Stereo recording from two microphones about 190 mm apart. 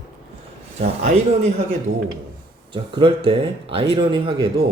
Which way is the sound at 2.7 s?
25° right (ahead or behind).